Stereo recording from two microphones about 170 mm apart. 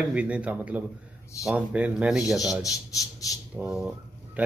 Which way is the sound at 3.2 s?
20° left (ahead or behind).